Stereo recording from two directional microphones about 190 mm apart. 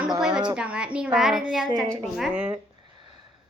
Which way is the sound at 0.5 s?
5° right (ahead or behind).